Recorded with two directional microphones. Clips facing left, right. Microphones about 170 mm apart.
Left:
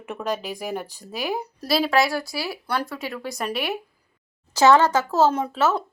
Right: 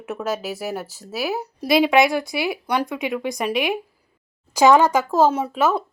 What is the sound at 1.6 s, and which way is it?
Speech, 20° right (ahead or behind).